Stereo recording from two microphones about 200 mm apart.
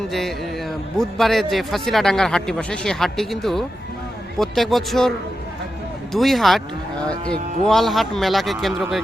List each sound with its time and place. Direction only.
0.1 s speech: centre (ahead or behind)
6.1 s speech: centre (ahead or behind)
7.7 s speech: centre (ahead or behind)